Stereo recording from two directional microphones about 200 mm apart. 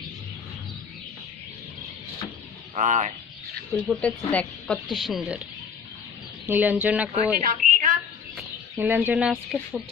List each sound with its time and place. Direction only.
2.7 s speech: 35° right (ahead or behind)
3.7 s speech: centre (ahead or behind)
6.4 s speech: 10° right (ahead or behind)
7.3 s a sound: 40° right (ahead or behind)
8.7 s speech: 10° right (ahead or behind)